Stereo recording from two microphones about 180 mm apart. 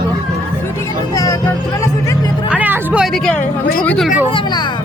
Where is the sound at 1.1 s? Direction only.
20° left (ahead or behind).